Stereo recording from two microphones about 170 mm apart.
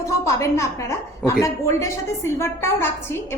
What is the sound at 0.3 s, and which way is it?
A woman's voice, 15° left (ahead or behind).